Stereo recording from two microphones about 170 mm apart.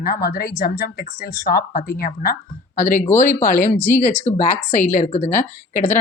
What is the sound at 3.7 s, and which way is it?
Speech, 10° left (ahead or behind).